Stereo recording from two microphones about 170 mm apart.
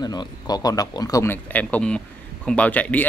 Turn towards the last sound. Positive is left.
turn(degrees=10)  # may be behind; listen again after turning